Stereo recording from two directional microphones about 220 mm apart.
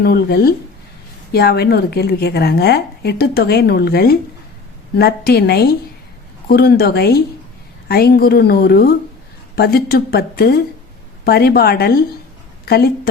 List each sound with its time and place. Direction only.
0.0 s a woman's voice: 45° left (ahead or behind)